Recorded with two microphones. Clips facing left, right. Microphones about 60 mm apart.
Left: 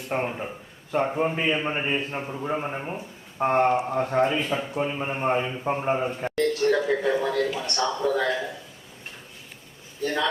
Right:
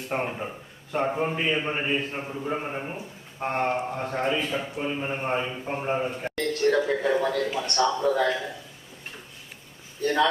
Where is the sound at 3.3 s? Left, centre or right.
Left.